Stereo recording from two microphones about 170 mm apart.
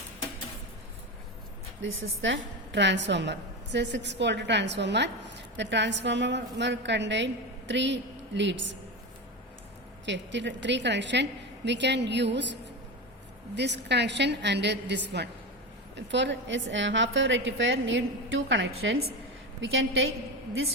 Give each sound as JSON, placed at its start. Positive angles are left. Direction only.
{"t": 1.8, "sound": "a woman's voice", "side_deg": -90}
{"t": 10.1, "sound": "a woman's voice", "side_deg": -90}
{"t": 13.6, "sound": "a woman's voice", "side_deg": -90}